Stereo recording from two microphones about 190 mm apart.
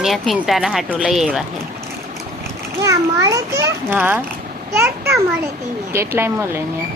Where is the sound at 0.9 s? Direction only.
Centre (ahead or behind).